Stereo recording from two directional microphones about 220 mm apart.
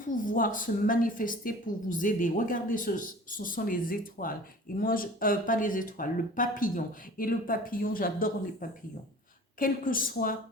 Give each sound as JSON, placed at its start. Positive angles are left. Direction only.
{"t": 0.0, "sound": "speech", "side_deg": 40}